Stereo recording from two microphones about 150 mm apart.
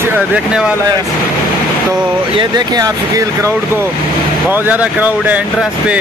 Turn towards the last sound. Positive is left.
turn(degrees=-10)  # may be behind; listen again after turning